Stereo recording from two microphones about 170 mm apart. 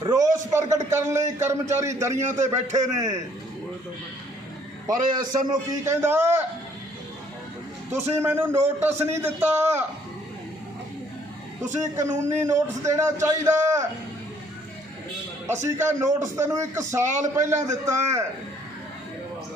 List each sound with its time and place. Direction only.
0.0 s a man's voice: 20° right (ahead or behind)
4.9 s a man's voice: 25° right (ahead or behind)
8.2 s a man's voice: 10° right (ahead or behind)
11.9 s a man's voice: 15° right (ahead or behind)
15.6 s a man's voice: 15° right (ahead or behind)